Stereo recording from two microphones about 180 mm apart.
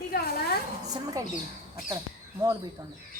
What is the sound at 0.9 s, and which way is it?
Speech, 20° right (ahead or behind).